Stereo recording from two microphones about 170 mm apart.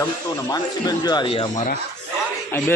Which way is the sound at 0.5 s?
25° left (ahead or behind).